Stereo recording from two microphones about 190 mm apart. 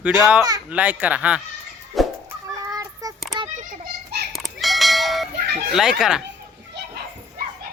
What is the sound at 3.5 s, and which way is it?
Children playing, 50° right (ahead or behind).